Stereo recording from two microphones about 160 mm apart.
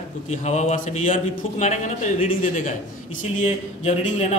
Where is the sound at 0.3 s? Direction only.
45° left (ahead or behind).